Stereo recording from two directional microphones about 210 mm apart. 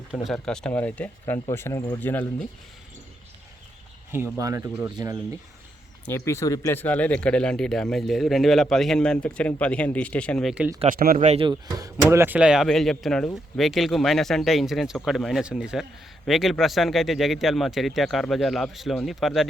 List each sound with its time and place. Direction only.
0.3 s speech: 5° left (ahead or behind)
4.4 s speech: 15° right (ahead or behind)
6.1 s speech: 10° left (ahead or behind); by 10.8 s 5° right (ahead or behind)
10.8 s speech: 40° right (ahead or behind); by 11.9 s 20° right (ahead or behind)
12.1 s speech: 10° right (ahead or behind)